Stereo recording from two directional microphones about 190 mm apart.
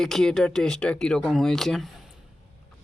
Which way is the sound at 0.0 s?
Centre (ahead or behind).